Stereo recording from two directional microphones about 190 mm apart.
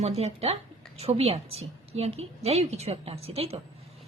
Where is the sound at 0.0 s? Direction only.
35° right (ahead or behind).